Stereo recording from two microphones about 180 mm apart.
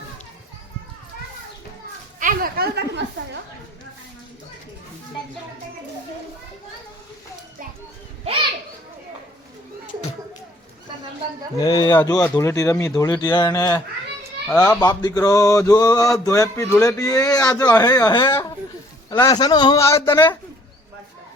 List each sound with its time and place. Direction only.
2.1 s speech: 50° right (ahead or behind); by 3.1 s 70° right (ahead or behind)
11.6 s mantra: 20° left (ahead or behind)
12.3 s speech: 15° left (ahead or behind)
14.4 s speech: 5° left (ahead or behind)
14.8 s mantra: 25° left (ahead or behind)
20.1 s speech: 15° left (ahead or behind)